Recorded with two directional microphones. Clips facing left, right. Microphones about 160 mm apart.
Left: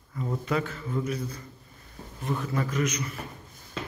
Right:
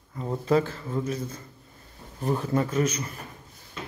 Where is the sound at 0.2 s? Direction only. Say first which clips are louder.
Right 5 dB; 30° right (ahead or behind).